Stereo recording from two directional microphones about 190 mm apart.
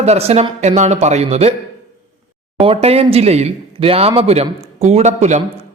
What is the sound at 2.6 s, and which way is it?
A man's voice, 30° right (ahead or behind).